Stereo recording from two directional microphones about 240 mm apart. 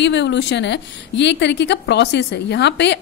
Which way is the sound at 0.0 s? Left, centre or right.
Left.